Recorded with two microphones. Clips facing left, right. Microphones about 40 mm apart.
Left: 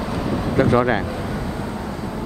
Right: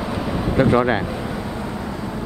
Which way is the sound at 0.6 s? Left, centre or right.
Right.